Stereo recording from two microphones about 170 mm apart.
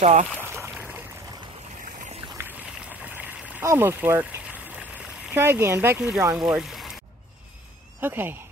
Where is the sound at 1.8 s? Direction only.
50° right (ahead or behind).